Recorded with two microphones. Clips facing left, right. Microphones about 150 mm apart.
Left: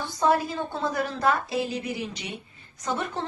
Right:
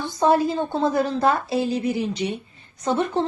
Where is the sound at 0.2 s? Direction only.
25° right (ahead or behind).